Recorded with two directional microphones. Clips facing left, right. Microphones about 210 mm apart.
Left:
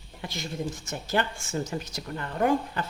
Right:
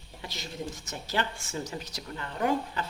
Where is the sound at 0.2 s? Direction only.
50° left (ahead or behind).